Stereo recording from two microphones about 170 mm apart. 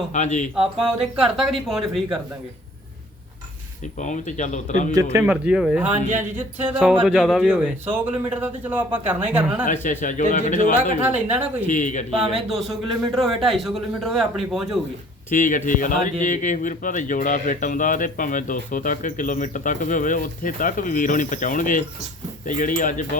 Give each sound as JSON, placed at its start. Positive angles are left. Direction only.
{"t": 0.1, "sound": "a man's voice", "side_deg": 45}
{"t": 0.5, "sound": "speech", "side_deg": -5}
{"t": 3.9, "sound": "a man's voice", "side_deg": 45}
{"t": 5.2, "sound": "speech", "side_deg": -5}
{"t": 10.0, "sound": "a man's voice", "side_deg": 50}
{"t": 11.1, "sound": "speech", "side_deg": -10}
{"t": 11.7, "sound": "a man's voice", "side_deg": 45}
{"t": 12.3, "sound": "speech", "side_deg": 0}
{"t": 15.3, "sound": "a man's voice", "side_deg": 50}